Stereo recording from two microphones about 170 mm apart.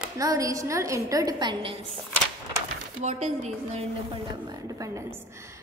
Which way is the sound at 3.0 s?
40° right (ahead or behind).